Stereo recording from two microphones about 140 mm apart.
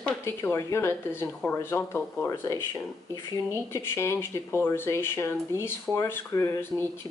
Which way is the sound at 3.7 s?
20° left (ahead or behind).